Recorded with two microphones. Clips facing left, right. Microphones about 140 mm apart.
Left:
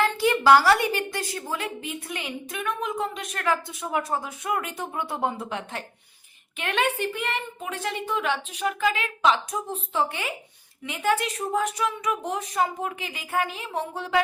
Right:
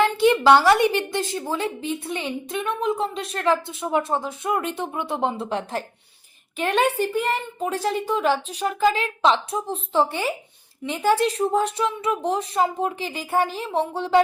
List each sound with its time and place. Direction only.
0.0 s a woman's voice: 20° right (ahead or behind)
5.5 s speech: 35° right (ahead or behind)